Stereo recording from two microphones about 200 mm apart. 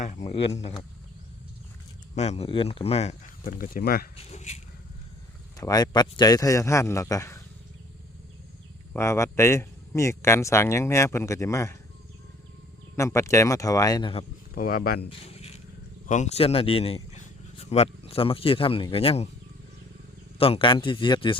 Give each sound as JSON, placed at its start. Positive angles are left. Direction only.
{"t": 0.0, "sound": "speech", "side_deg": 35}
{"t": 2.1, "sound": "speech", "side_deg": 35}
{"t": 3.4, "sound": "speech", "side_deg": 45}
{"t": 4.2, "sound": "speech", "side_deg": 35}
{"t": 5.5, "sound": "speech", "side_deg": 20}
{"t": 8.9, "sound": "speech", "side_deg": 15}
{"t": 13.0, "sound": "speech", "side_deg": 15}
{"t": 14.5, "sound": "speech", "side_deg": 45}
{"t": 15.2, "sound": "a sound", "side_deg": 30}
{"t": 16.0, "sound": "speech", "side_deg": 35}
{"t": 20.4, "sound": "speech", "side_deg": 25}